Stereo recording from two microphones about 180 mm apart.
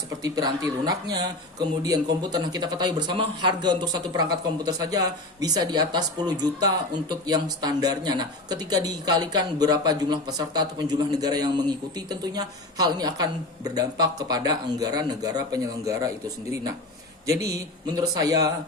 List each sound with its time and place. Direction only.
0.2 s speech: 20° right (ahead or behind)